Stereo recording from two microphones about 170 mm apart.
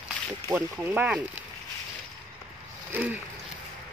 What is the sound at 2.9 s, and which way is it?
Speech, 10° right (ahead or behind).